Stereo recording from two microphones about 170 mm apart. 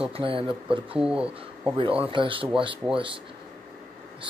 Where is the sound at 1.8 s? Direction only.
35° right (ahead or behind).